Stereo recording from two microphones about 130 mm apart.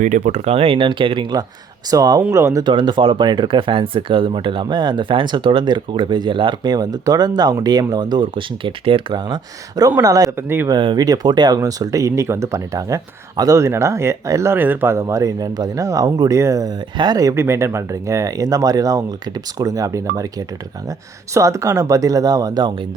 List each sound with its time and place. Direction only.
0.0 s speech: 70° right (ahead or behind); by 2.6 s 25° right (ahead or behind)
2.6 s speech: 35° right (ahead or behind)
10.3 s speech: 15° right (ahead or behind)
10.7 s speech: 35° right (ahead or behind)
21.3 s speech: 25° right (ahead or behind)